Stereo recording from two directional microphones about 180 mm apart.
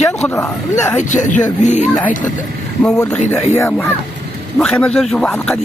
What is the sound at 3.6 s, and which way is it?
Speech, 10° left (ahead or behind).